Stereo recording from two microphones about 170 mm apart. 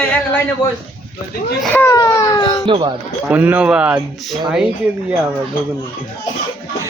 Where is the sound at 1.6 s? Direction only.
10° left (ahead or behind).